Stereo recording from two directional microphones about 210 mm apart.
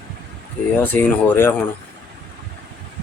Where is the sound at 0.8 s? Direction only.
10° left (ahead or behind).